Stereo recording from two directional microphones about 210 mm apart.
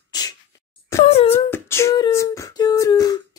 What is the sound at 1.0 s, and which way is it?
Wail, 30° left (ahead or behind).